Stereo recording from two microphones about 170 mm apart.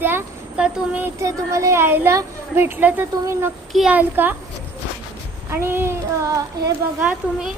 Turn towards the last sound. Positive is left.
turn(degrees=-5)  # may be behind; listen again after turning